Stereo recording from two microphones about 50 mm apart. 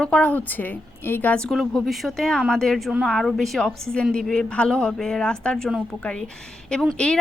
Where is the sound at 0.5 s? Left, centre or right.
Left.